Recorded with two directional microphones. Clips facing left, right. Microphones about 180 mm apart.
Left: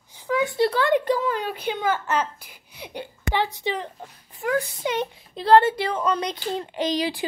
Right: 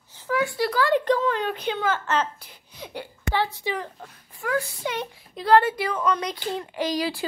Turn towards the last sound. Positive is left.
turn(degrees=20)  # may be behind; listen again after turning